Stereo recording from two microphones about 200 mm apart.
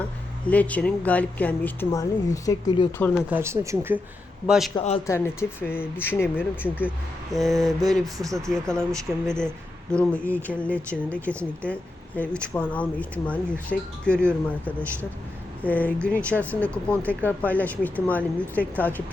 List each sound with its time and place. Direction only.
0.4 s speech: 5° left (ahead or behind)
3.2 s speech: 10° right (ahead or behind)
4.4 s speech: centre (ahead or behind)
4.7 s a man's voice: 30° left (ahead or behind)
5.0 s speech: 15° left (ahead or behind)